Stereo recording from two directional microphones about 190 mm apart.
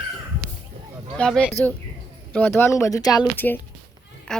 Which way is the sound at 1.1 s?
5° left (ahead or behind).